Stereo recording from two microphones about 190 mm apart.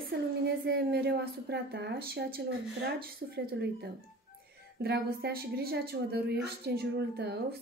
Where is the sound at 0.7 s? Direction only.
60° right (ahead or behind).